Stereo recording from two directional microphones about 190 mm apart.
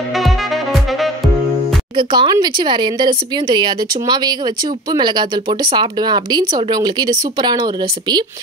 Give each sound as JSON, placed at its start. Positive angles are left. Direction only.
{"t": 2.0, "sound": "speech", "side_deg": -25}